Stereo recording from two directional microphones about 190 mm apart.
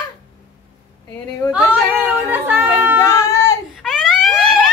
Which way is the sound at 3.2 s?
15° left (ahead or behind).